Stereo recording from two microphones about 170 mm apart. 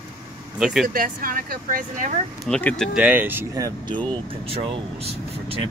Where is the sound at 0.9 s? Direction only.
55° right (ahead or behind).